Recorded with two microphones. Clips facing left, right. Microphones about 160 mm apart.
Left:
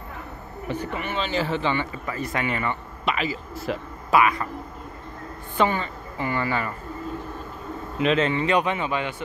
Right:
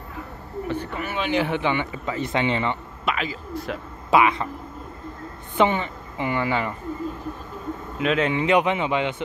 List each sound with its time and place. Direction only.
0.7 s speech: 5° left (ahead or behind)
1.0 s a man's voice: 10° right (ahead or behind)
3.1 s speech: 5° left (ahead or behind)
4.1 s speech: 20° right (ahead or behind)
5.6 s a man's voice: 20° right (ahead or behind)
8.0 s a man's voice: 5° right (ahead or behind)